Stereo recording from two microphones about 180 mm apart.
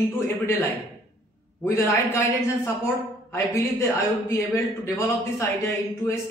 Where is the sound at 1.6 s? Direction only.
10° left (ahead or behind).